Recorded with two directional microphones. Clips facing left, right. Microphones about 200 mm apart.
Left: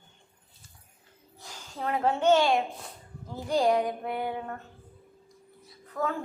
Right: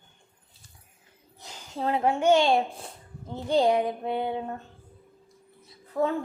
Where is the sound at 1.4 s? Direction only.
20° right (ahead or behind).